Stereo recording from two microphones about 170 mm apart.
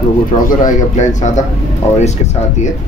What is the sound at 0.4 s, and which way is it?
A man's voice, 50° left (ahead or behind).